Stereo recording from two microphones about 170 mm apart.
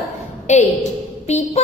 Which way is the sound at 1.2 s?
40° left (ahead or behind).